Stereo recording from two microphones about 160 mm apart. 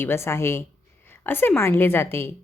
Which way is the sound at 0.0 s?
15° left (ahead or behind).